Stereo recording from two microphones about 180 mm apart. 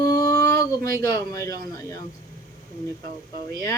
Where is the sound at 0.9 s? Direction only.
20° left (ahead or behind).